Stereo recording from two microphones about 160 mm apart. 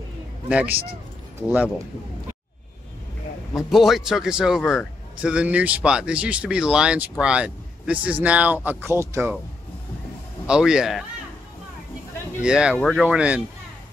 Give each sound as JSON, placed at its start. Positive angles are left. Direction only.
{"t": 0.5, "sound": "speech", "side_deg": -10}
{"t": 3.5, "sound": "a man's voice", "side_deg": 0}
{"t": 10.4, "sound": "a man's voice", "side_deg": -5}
{"t": 12.4, "sound": "a man's voice", "side_deg": -5}
{"t": 12.7, "sound": "speech", "side_deg": 10}
{"t": 13.0, "sound": "speech", "side_deg": -5}